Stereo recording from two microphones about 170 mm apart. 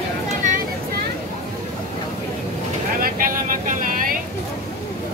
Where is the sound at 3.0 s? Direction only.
55° right (ahead or behind).